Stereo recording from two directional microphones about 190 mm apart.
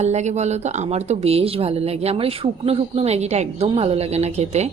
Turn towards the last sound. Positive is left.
turn(degrees=-35)  # may be behind; listen again after turning